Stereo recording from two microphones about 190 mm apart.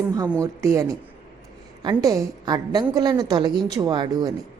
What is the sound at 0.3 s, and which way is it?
A woman's voice, 15° right (ahead or behind).